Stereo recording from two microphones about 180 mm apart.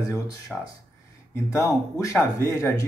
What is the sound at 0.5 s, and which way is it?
Speech, 5° right (ahead or behind).